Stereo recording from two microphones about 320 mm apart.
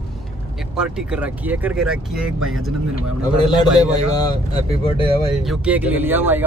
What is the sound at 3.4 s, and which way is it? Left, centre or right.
A man's voice, centre.